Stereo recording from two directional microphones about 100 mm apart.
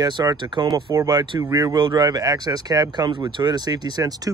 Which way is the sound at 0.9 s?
35° right (ahead or behind).